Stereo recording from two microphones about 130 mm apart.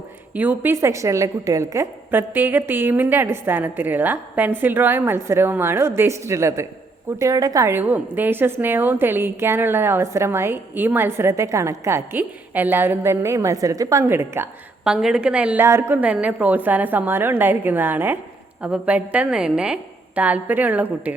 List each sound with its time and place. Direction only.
0.3 s a woman's voice: 15° right (ahead or behind)
14.8 s a woman's voice: 5° right (ahead or behind)